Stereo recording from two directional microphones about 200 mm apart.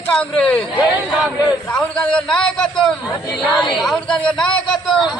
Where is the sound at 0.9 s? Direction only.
5° right (ahead or behind).